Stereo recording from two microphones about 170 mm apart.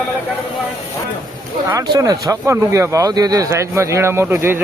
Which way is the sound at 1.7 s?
25° right (ahead or behind).